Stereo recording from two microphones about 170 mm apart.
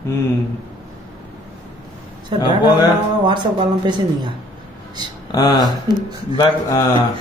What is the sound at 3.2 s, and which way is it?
Speech, 25° right (ahead or behind).